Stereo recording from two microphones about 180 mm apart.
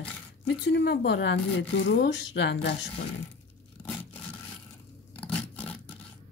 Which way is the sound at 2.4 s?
70° left (ahead or behind).